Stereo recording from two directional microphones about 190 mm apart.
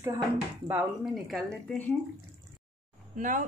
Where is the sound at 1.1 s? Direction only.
Centre (ahead or behind).